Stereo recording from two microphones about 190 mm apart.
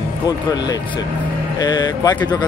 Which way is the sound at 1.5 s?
20° left (ahead or behind).